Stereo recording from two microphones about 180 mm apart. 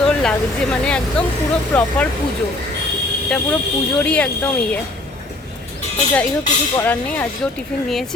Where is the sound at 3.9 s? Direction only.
5° left (ahead or behind).